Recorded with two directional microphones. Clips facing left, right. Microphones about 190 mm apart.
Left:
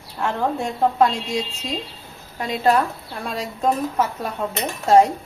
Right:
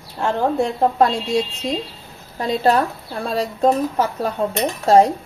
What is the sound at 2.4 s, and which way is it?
Speech, 35° right (ahead or behind).